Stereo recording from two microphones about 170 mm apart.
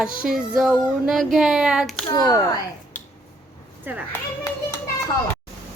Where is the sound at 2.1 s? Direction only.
20° left (ahead or behind).